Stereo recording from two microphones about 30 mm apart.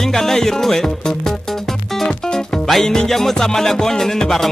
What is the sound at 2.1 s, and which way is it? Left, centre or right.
Music, left.